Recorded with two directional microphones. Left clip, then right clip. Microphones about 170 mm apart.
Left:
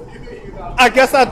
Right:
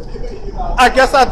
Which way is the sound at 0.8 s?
40° left (ahead or behind).